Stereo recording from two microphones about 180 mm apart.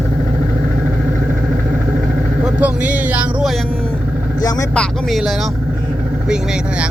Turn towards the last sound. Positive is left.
turn(degrees=0)  # may be behind; listen again after turning